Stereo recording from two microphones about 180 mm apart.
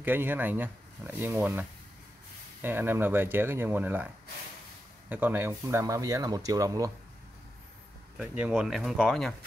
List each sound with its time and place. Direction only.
0.0 s speech: 10° right (ahead or behind)
5.1 s speech: 10° right (ahead or behind)
8.2 s speech: 5° right (ahead or behind)